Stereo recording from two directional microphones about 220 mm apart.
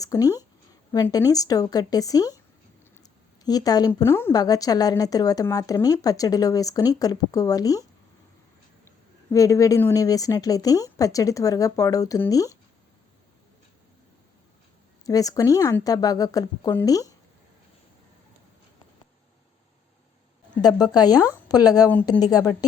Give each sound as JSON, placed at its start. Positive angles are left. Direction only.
{"t": 0.0, "sound": "a woman's voice", "side_deg": 15}
{"t": 9.3, "sound": "a woman's voice", "side_deg": 15}
{"t": 15.0, "sound": "a woman's voice", "side_deg": 15}
{"t": 20.6, "sound": "a woman's voice", "side_deg": 20}